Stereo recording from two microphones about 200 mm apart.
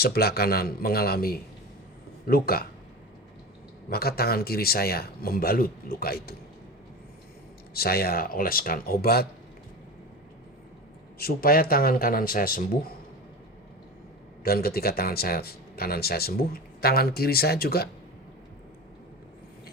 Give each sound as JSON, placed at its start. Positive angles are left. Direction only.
{"t": 0.0, "sound": "speech", "side_deg": 50}
{"t": 3.8, "sound": "speech", "side_deg": 50}
{"t": 7.7, "sound": "speech", "side_deg": 50}
{"t": 11.2, "sound": "speech", "side_deg": 50}
{"t": 14.4, "sound": "speech", "side_deg": 50}